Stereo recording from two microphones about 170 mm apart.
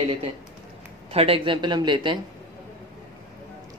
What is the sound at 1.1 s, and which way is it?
A woman's voice, 35° right (ahead or behind).